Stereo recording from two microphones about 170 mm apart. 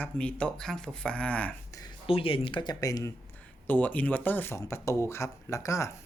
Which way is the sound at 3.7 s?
10° left (ahead or behind).